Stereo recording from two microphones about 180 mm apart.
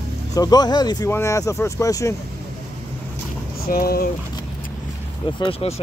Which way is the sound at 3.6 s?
55° left (ahead or behind).